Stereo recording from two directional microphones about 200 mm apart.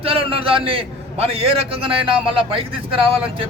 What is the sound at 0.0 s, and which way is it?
A man's voice, 25° right (ahead or behind).